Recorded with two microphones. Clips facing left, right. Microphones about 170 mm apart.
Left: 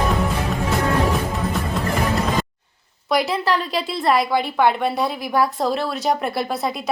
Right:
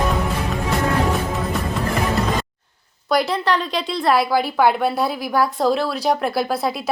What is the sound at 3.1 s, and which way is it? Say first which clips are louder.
A woman's voice: right 1 dB; centre (ahead or behind).